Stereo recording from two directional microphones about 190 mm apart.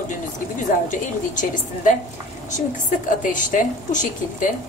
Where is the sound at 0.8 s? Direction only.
40° left (ahead or behind).